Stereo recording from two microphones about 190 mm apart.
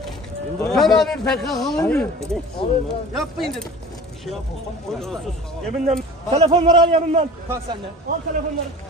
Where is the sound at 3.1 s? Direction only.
Centre (ahead or behind).